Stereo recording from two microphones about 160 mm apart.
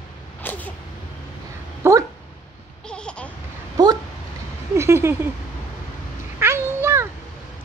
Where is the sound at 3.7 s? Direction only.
25° right (ahead or behind).